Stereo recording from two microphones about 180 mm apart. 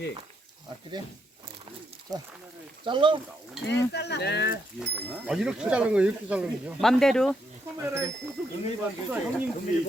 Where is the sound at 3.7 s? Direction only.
65° left (ahead or behind).